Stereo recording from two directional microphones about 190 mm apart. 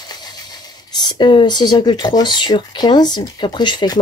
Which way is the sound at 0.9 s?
20° left (ahead or behind).